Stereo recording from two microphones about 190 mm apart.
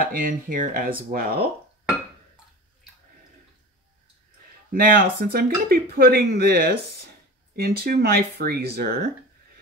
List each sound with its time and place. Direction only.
0.0 s speech: 45° right (ahead or behind)
4.8 s speech: 55° right (ahead or behind)